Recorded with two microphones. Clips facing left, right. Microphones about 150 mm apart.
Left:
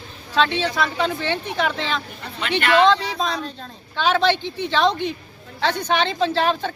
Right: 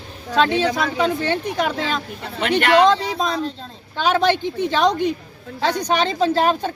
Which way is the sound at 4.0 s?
45° right (ahead or behind).